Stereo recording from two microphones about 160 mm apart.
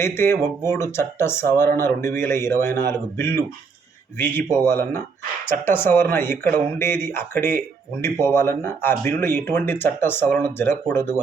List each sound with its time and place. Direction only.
0.0 s speech: 15° left (ahead or behind)
4.5 s speech: 15° left (ahead or behind)